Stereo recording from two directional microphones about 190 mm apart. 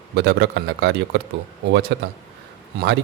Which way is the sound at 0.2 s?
65° right (ahead or behind).